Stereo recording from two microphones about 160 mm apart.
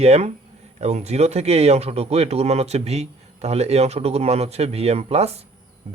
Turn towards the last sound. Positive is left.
turn(degrees=-40)  # may be behind; listen again after turning